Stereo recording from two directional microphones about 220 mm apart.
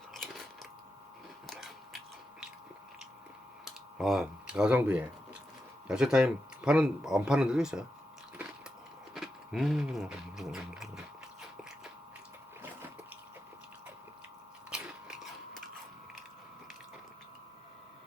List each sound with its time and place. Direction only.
0.1 s biting: centre (ahead or behind)
1.5 s a sound: centre (ahead or behind)
3.9 s speech: centre (ahead or behind)
9.1 s speech: centre (ahead or behind)
14.7 s biting: 5° right (ahead or behind)